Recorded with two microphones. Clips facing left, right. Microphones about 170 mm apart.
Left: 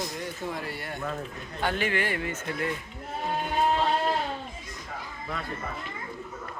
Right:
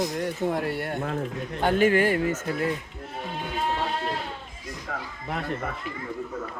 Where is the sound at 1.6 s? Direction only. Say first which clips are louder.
Right 8 dB; 45° right (ahead or behind).